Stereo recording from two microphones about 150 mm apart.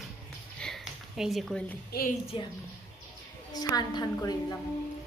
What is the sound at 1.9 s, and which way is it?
Speech, 75° left (ahead or behind).